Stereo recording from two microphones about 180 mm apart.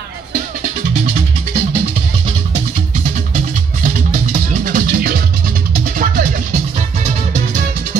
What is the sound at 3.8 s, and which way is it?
Music, 50° right (ahead or behind).